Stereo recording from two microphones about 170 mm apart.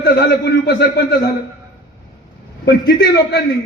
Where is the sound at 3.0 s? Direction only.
75° left (ahead or behind).